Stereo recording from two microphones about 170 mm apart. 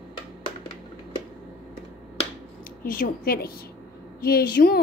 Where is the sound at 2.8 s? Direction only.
55° left (ahead or behind).